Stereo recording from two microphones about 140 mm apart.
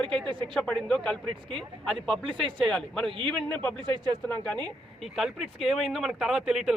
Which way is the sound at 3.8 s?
30° right (ahead or behind).